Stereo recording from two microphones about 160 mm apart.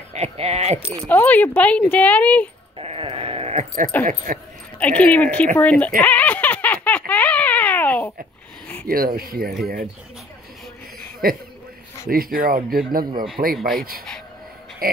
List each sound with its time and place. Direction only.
0.1 s speech: 40° right (ahead or behind)
1.0 s speech: 10° left (ahead or behind)
2.8 s sheep: 35° right (ahead or behind)
4.0 s speech: 50° right (ahead or behind)
4.7 s speech: 10° left (ahead or behind)
6.0 s a sound: 10° left (ahead or behind)
8.8 s speech: 65° right (ahead or behind)
11.2 s speech: 65° right (ahead or behind)
13.4 s speech: 45° right (ahead or behind)
13.7 s speech: 70° right (ahead or behind)
14.8 s oink: 70° right (ahead or behind)